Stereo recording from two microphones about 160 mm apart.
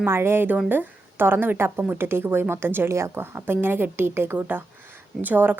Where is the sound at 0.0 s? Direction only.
15° right (ahead or behind).